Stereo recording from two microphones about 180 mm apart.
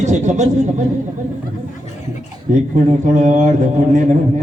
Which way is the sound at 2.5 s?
45° right (ahead or behind).